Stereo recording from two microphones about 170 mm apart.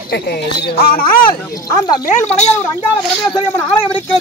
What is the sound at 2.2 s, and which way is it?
Speech, 40° left (ahead or behind).